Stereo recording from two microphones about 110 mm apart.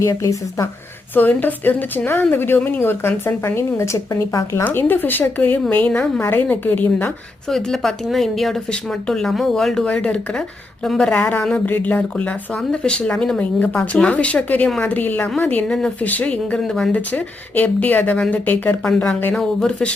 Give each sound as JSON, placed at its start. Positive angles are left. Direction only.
{"t": 0.0, "sound": "a woman's voice", "side_deg": 30}
{"t": 1.1, "sound": "a woman's voice", "side_deg": 15}
{"t": 4.6, "sound": "speech", "side_deg": 15}
{"t": 7.5, "sound": "speech", "side_deg": 0}
{"t": 11.1, "sound": "speech", "side_deg": 15}